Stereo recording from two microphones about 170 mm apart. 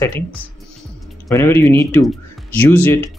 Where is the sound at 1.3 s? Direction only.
15° left (ahead or behind).